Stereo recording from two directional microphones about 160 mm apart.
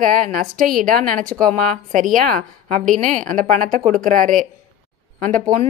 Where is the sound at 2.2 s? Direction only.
55° right (ahead or behind).